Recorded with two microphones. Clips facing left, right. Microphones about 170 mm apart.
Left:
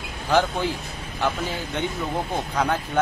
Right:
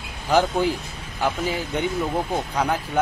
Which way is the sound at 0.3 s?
15° right (ahead or behind).